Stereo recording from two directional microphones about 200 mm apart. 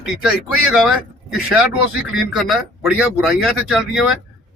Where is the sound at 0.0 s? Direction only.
5° right (ahead or behind).